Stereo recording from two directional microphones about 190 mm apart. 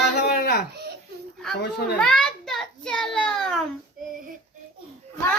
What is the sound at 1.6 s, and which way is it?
Speech, 60° left (ahead or behind).